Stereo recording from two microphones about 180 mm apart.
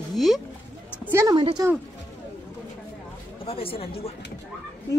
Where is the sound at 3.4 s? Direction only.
30° left (ahead or behind).